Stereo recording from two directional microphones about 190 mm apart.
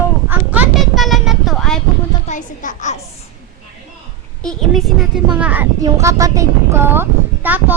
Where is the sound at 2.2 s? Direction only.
40° left (ahead or behind).